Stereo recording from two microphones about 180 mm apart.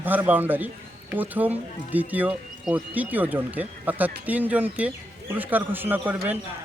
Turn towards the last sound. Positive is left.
turn(degrees=-10)  # may be behind; listen again after turning